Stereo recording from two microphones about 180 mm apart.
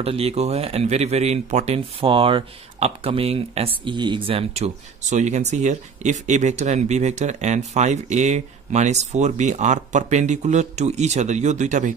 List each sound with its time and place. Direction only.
0.0 s speech: 35° right (ahead or behind)